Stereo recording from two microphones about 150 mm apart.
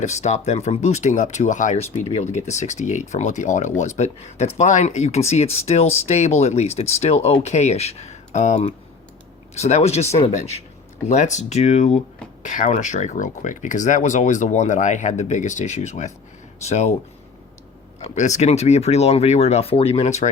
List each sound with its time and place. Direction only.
0.0 s speech: 50° left (ahead or behind)
18.0 s speech: 50° left (ahead or behind)